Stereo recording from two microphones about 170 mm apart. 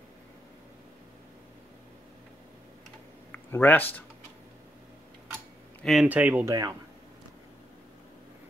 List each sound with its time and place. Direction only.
3.3 s speech: 10° left (ahead or behind)
5.8 s speech: centre (ahead or behind); by 6.7 s 15° right (ahead or behind)